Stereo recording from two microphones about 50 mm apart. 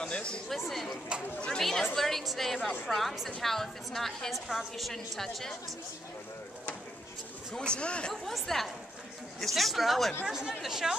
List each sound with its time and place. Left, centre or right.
0.1 s chatter: left
0.7 s a woman's voice: centre
7.5 s speech: centre
8.1 s a woman's voice: centre
10.2 s speech: centre